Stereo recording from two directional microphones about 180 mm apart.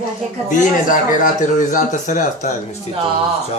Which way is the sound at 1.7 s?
45° left (ahead or behind).